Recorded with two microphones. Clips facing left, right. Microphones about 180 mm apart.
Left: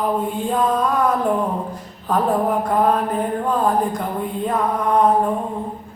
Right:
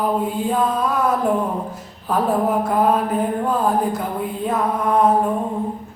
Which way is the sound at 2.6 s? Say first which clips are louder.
Even; 5° right (ahead or behind).